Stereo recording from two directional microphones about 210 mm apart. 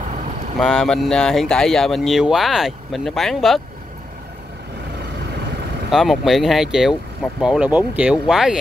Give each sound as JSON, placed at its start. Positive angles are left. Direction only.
{"t": 0.6, "sound": "speech", "side_deg": 0}
{"t": 5.9, "sound": "speech", "side_deg": 0}